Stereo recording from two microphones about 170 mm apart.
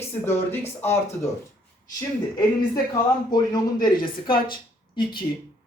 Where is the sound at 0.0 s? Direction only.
15° left (ahead or behind).